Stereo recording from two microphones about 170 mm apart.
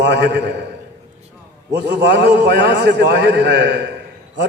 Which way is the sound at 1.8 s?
90° right.